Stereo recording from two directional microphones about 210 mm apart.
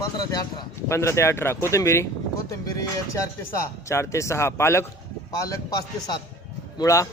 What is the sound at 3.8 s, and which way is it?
Speech, 15° left (ahead or behind).